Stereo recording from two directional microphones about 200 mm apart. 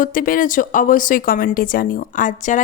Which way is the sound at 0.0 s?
45° left (ahead or behind).